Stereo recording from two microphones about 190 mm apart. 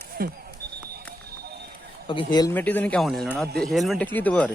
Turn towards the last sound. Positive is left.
turn(degrees=5)  # may be behind; listen again after turning